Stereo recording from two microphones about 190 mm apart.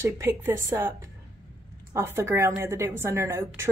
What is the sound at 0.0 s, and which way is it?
Speech, 15° right (ahead or behind).